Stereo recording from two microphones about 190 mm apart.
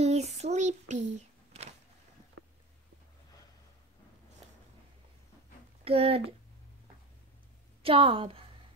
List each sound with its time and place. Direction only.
0.0 s child singing: 35° right (ahead or behind)
5.9 s speech: 30° right (ahead or behind)
7.8 s a woman's voice: 30° right (ahead or behind)